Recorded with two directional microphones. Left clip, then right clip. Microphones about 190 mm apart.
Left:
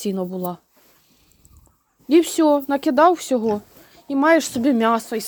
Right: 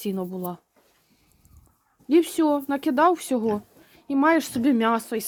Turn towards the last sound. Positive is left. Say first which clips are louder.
# left 4 dB
turn(degrees=5)  # may be behind; listen again after turning